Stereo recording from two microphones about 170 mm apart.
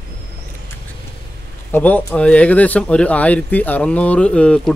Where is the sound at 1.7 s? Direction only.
10° left (ahead or behind).